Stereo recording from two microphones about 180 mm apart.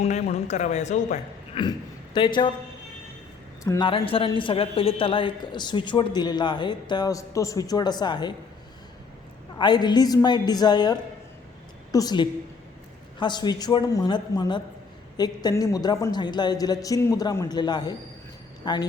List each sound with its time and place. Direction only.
0.0 s speech: 40° left (ahead or behind)
1.6 s a woman's voice: 30° left (ahead or behind)
3.6 s a woman's voice: 20° left (ahead or behind)
9.6 s a woman's voice: 25° left (ahead or behind)